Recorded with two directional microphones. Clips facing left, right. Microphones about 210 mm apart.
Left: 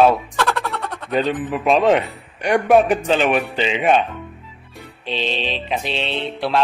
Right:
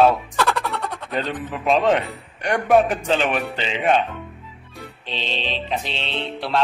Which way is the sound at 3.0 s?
5° left (ahead or behind).